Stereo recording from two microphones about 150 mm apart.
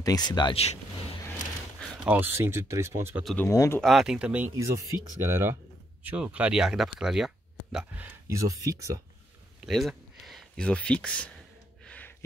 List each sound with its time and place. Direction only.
0.0 s speech: 25° left (ahead or behind)
2.0 s speech: 10° right (ahead or behind)
3.3 s speech: 20° left (ahead or behind)
3.8 s speech: centre (ahead or behind)
4.6 s speech: 20° right (ahead or behind)
9.7 s speech: centre (ahead or behind)
11.8 s a sound: 10° left (ahead or behind)